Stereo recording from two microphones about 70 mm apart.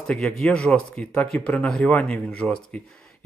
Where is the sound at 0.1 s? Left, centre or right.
Centre.